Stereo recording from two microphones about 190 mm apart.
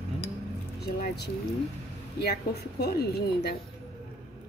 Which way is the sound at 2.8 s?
55° left (ahead or behind).